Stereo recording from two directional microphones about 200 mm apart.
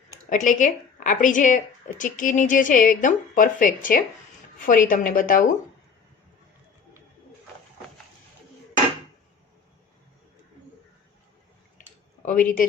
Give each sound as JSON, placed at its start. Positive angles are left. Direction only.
{"t": 0.3, "sound": "a woman's voice", "side_deg": 40}
{"t": 12.2, "sound": "a woman's voice", "side_deg": 40}